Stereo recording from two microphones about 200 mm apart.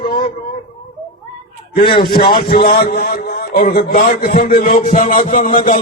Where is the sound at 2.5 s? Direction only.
45° left (ahead or behind).